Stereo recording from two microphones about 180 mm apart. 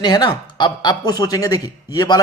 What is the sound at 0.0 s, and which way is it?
A man's voice, 20° left (ahead or behind).